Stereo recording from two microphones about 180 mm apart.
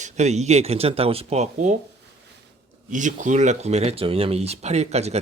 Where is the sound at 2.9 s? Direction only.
45° right (ahead or behind).